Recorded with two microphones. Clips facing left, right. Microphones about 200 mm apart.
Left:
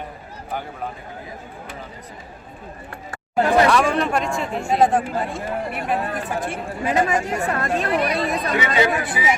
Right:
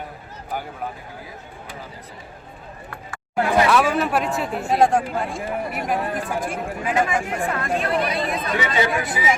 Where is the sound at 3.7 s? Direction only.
5° right (ahead or behind).